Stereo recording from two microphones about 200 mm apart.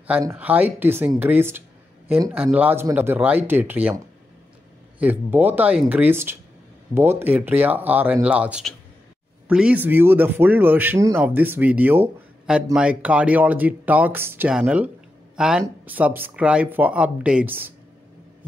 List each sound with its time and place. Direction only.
0.0 s speech: 10° right (ahead or behind)